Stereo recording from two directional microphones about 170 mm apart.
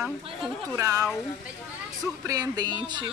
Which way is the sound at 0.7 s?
20° right (ahead or behind).